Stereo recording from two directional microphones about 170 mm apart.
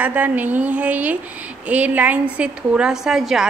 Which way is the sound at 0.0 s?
10° right (ahead or behind).